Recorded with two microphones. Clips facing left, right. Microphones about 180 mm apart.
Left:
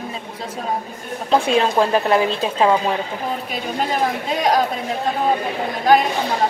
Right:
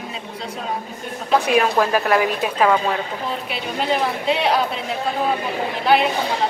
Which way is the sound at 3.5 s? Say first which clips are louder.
Right 2 dB; 45° left (ahead or behind).